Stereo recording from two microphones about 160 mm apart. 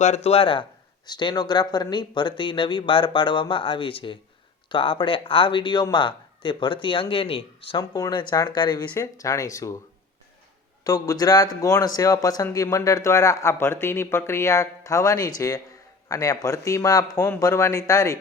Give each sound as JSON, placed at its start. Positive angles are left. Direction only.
{"t": 0.0, "sound": "speech", "side_deg": 40}
{"t": 10.8, "sound": "speech", "side_deg": 20}